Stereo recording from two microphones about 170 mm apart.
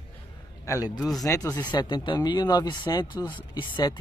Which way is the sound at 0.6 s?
20° left (ahead or behind).